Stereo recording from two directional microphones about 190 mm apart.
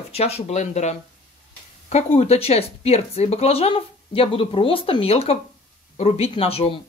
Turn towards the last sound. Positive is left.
turn(degrees=30)  # may be behind; listen again after turning